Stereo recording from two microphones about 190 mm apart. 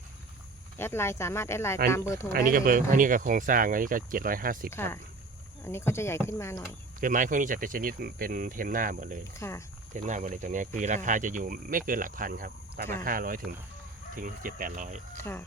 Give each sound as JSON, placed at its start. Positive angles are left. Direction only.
{"t": 0.8, "sound": "speech", "side_deg": 10}
{"t": 2.3, "sound": "speech", "side_deg": -50}
{"t": 4.7, "sound": "speech", "side_deg": 15}
{"t": 7.0, "sound": "speech", "side_deg": -45}
{"t": 9.4, "sound": "speech", "side_deg": 15}
{"t": 9.9, "sound": "speech", "side_deg": -40}
{"t": 15.2, "sound": "speech", "side_deg": 10}